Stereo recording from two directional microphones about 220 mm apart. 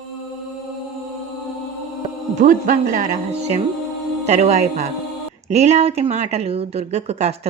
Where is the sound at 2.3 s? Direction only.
35° right (ahead or behind).